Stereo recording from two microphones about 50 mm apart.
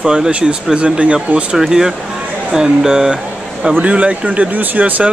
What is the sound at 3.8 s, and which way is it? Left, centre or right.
Speech, right.